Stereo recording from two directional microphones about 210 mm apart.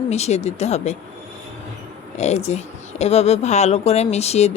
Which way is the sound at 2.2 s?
30° left (ahead or behind).